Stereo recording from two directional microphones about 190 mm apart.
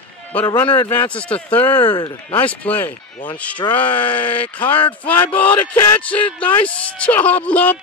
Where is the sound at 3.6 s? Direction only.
20° left (ahead or behind).